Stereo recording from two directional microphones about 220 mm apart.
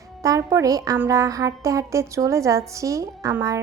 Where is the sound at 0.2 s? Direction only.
15° right (ahead or behind).